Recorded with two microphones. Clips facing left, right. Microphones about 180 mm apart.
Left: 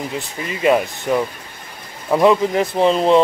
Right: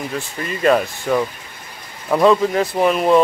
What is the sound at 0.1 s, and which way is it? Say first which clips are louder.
Speech: right 1 dB; 15° left (ahead or behind).